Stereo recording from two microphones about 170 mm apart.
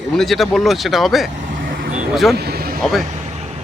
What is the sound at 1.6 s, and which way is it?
Vehicle, 60° right (ahead or behind).